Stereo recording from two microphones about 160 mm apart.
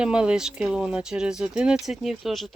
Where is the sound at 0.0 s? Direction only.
5° right (ahead or behind).